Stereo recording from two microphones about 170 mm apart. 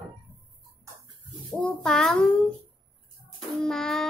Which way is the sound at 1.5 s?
5° left (ahead or behind).